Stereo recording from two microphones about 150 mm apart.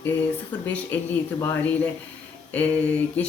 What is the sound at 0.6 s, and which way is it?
Speech, 10° left (ahead or behind).